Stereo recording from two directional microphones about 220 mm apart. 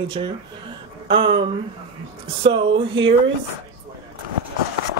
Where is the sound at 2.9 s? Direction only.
60° right (ahead or behind).